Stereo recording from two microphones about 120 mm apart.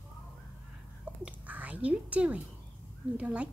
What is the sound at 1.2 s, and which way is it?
Whispering, 10° right (ahead or behind).